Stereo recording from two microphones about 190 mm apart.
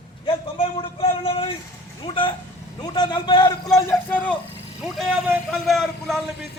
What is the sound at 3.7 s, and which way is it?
Speech, 5° left (ahead or behind).